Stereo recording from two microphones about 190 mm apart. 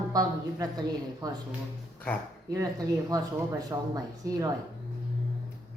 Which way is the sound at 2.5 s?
20° right (ahead or behind).